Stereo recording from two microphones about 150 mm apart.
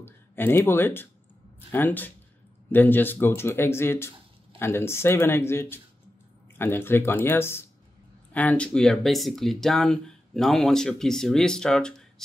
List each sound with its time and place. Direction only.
0.0 s speech: 15° left (ahead or behind)